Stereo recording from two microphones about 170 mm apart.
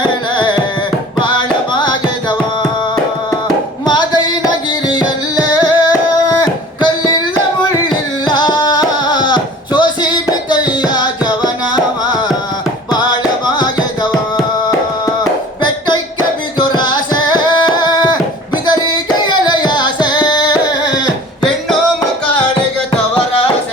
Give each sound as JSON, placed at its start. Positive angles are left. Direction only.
{"t": 0.3, "sound": "music", "side_deg": 25}
{"t": 4.4, "sound": "music", "side_deg": 25}
{"t": 8.3, "sound": "music", "side_deg": 25}
{"t": 12.9, "sound": "music", "side_deg": 25}
{"t": 15.0, "sound": "a sound", "side_deg": 25}
{"t": 16.6, "sound": "carnatic music", "side_deg": 25}
{"t": 19.5, "sound": "music", "side_deg": 25}